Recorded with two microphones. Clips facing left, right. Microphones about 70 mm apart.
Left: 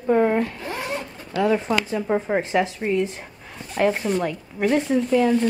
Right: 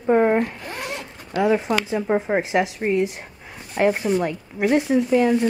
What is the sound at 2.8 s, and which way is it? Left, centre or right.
Speech, right.